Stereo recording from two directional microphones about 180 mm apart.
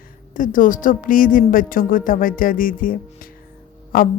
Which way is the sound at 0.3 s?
45° left (ahead or behind).